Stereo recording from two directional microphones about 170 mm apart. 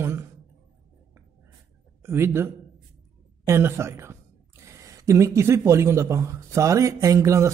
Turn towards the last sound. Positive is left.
turn(degrees=-15)  # may be behind; listen again after turning